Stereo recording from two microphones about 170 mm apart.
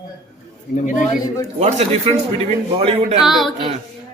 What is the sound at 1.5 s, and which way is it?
A man's voice, 40° right (ahead or behind).